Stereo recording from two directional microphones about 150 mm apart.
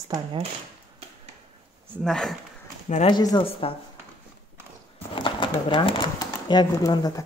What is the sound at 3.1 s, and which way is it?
Speech, 30° left (ahead or behind).